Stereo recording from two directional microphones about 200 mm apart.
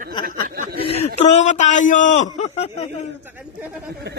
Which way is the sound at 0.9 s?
35° left (ahead or behind).